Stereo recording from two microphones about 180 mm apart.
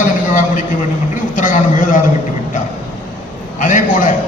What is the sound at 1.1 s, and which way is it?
Speech, 45° left (ahead or behind).